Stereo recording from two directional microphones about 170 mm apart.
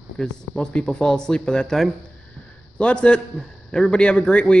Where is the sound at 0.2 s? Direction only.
5° left (ahead or behind).